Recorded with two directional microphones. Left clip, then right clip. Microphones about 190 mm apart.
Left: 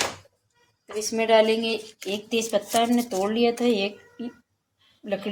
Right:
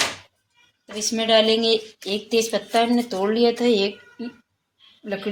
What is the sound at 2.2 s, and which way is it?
Speech, 10° right (ahead or behind).